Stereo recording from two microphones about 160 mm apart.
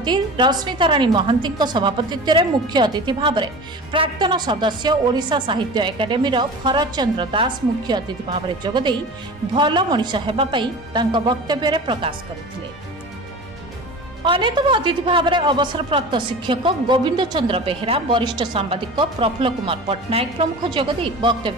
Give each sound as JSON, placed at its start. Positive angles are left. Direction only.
{"t": 0.0, "sound": "a woman's voice", "side_deg": -25}
{"t": 14.2, "sound": "a woman's voice", "side_deg": -30}